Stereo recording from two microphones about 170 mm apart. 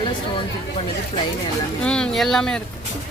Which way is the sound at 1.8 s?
5° left (ahead or behind).